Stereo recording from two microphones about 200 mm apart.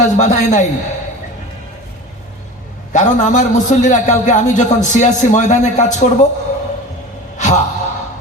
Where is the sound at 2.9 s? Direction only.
40° left (ahead or behind).